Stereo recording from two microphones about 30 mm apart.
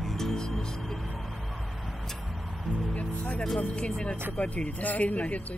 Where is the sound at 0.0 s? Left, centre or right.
Centre.